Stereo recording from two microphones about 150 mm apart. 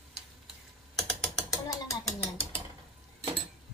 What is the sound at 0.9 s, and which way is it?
Ratchet, 5° left (ahead or behind).